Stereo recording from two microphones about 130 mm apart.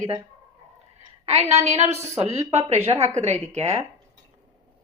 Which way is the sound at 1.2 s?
55° right (ahead or behind).